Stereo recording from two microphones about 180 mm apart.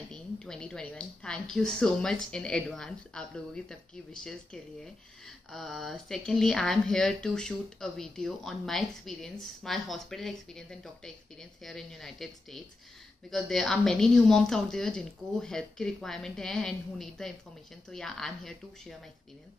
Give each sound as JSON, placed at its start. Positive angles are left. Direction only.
{"t": 0.1, "sound": "speech", "side_deg": 5}